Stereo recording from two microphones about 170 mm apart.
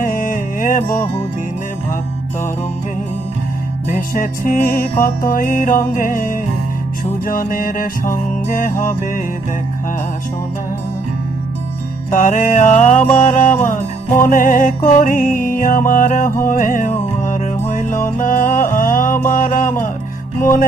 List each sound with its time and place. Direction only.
0.0 s music: 50° left (ahead or behind)
3.9 s music: 50° left (ahead or behind)
12.1 s music: 50° left (ahead or behind)